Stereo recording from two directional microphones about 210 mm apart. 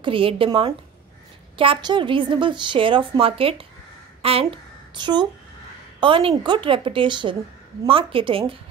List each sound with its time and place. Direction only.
0.0 s a woman's voice: 25° right (ahead or behind)